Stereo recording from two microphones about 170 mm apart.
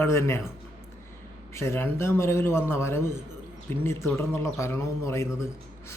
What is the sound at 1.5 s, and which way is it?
A man's voice, 15° left (ahead or behind).